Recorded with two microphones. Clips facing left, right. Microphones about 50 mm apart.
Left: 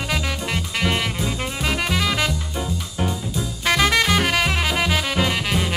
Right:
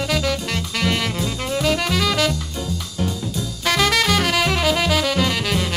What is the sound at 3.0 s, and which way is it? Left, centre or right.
Music, centre.